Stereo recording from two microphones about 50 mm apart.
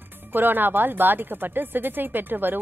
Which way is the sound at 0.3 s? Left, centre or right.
Right.